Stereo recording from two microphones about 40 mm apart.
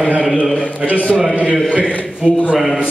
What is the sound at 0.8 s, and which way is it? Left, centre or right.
A man's voice, right.